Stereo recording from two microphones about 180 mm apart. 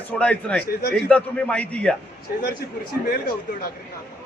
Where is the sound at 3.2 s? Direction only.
55° left (ahead or behind).